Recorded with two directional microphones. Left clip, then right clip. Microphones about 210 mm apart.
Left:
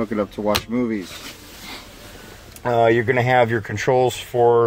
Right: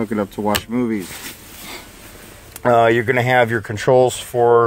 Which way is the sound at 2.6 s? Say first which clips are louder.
Right 3 dB; 50° right (ahead or behind).